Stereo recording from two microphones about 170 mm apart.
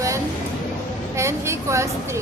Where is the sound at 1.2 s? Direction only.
15° right (ahead or behind).